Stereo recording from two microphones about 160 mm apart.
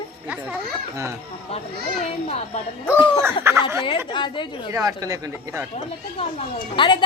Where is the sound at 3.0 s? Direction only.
30° left (ahead or behind).